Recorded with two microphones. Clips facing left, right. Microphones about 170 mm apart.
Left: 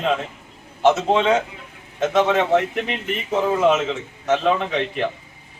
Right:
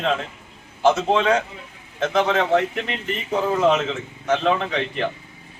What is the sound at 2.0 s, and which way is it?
A man's voice, 5° left (ahead or behind).